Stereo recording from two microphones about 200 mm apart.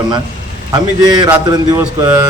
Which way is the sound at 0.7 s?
20° right (ahead or behind).